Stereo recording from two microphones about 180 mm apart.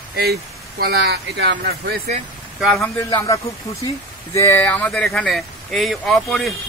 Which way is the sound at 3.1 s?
15° left (ahead or behind).